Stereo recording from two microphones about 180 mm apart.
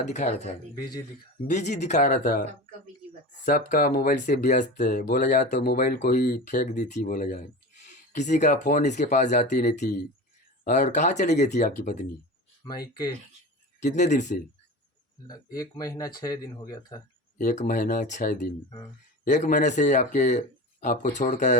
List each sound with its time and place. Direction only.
0.1 s speech: 40° left (ahead or behind)
12.6 s speech: 20° left (ahead or behind)
13.7 s speech: 40° left (ahead or behind)
15.5 s speech: 20° left (ahead or behind)
17.3 s speech: 45° left (ahead or behind)